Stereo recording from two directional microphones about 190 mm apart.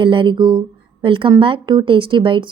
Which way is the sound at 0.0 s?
25° right (ahead or behind).